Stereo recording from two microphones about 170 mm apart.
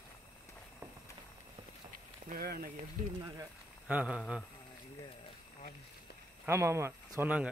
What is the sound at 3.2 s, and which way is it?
Speech, 25° right (ahead or behind).